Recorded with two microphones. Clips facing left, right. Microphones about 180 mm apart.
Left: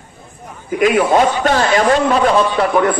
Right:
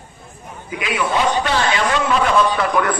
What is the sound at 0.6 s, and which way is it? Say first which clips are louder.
A man's voice: left 9 dB; 45° left (ahead or behind).